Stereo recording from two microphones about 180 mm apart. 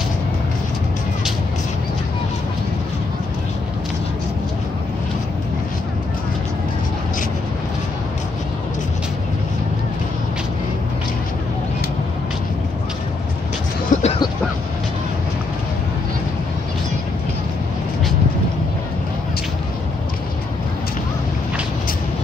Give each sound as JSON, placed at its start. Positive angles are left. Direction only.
{"t": 13.9, "sound": "vehicle", "side_deg": 45}